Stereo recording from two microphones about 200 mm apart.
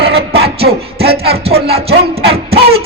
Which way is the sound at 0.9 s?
50° right (ahead or behind).